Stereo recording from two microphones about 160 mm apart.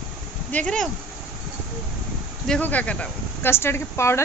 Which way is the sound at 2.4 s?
5° left (ahead or behind).